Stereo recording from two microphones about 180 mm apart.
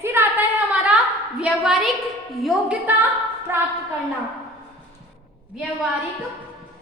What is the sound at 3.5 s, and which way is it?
Speech, 15° right (ahead or behind).